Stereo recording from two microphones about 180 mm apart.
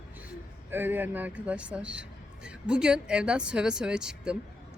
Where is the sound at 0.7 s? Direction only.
10° right (ahead or behind).